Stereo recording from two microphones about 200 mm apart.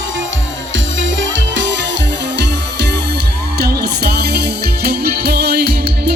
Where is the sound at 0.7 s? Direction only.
70° right (ahead or behind).